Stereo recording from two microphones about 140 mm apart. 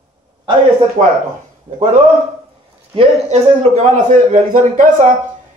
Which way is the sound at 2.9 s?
45° right (ahead or behind).